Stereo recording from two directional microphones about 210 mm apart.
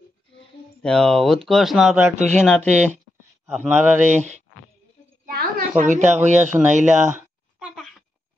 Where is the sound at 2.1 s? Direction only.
35° right (ahead or behind).